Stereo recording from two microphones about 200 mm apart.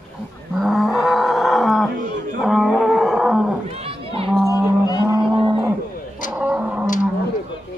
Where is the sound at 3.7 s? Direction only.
30° right (ahead or behind).